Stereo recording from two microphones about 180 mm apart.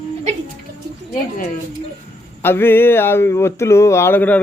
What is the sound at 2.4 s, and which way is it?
Speech, 10° left (ahead or behind).